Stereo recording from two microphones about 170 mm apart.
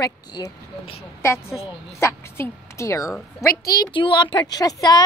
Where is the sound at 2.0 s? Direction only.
15° left (ahead or behind).